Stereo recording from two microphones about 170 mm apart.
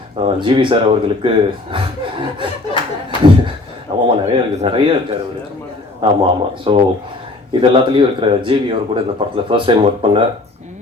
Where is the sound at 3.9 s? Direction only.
25° right (ahead or behind).